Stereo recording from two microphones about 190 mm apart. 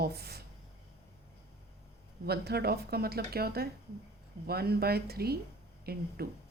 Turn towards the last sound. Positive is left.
turn(degrees=-55)  # may be behind; listen again after turning